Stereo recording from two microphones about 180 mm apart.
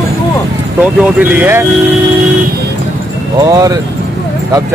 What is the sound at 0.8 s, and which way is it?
Speech, 10° right (ahead or behind).